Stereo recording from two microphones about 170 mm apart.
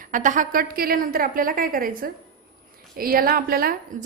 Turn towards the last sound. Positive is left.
turn(degrees=-60)  # may be behind; listen again after turning